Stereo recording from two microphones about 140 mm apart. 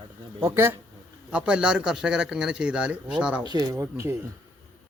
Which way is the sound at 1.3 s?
5° right (ahead or behind).